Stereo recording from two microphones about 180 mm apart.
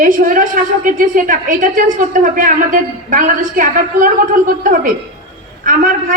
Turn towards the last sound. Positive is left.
turn(degrees=-50)  # may be behind; listen again after turning